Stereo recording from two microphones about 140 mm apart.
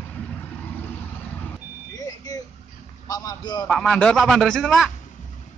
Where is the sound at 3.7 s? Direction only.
5° left (ahead or behind).